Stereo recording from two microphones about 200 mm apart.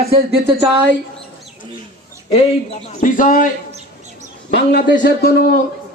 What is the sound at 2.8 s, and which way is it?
Speech, 40° left (ahead or behind).